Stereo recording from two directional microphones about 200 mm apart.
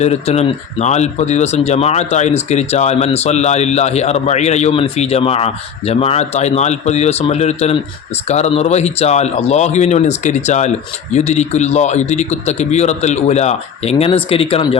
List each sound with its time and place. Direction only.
0.0 s speech: 35° left (ahead or behind)